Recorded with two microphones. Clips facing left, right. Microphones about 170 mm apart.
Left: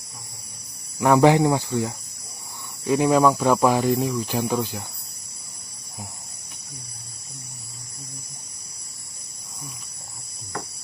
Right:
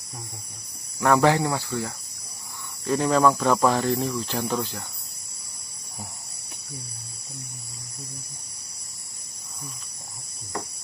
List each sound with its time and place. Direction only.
0.9 s speech: 15° left (ahead or behind)